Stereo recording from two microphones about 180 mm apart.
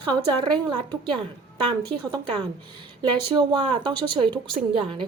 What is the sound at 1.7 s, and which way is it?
A woman's voice, 25° right (ahead or behind).